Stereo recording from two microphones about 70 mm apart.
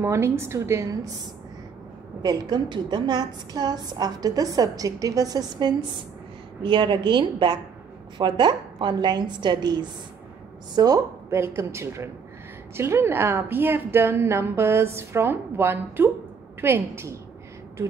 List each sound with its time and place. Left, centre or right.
0.0 s a woman's voice: right
2.2 s a woman's voice: right
10.7 s a woman's voice: right
11.2 s a woman's voice: right